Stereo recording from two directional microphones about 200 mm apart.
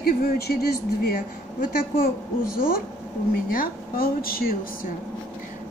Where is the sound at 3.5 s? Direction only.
45° left (ahead or behind).